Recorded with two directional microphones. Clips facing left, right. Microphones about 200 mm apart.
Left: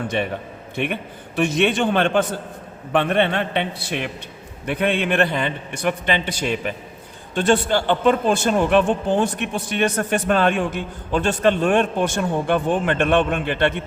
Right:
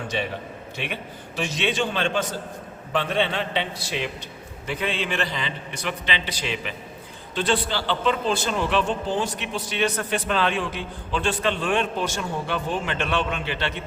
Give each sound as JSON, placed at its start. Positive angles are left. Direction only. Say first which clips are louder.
{"t": 0.1, "sound": "a man's voice", "louder": "left 4 dB", "side_deg": 55}